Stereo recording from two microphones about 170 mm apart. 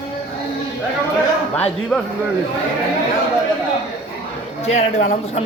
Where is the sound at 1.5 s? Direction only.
5° left (ahead or behind).